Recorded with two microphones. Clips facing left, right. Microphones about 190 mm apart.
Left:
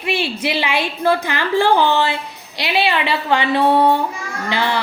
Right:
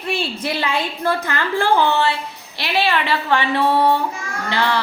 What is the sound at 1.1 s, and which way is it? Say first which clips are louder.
A woman's voice: left 4 dB; 15° left (ahead or behind).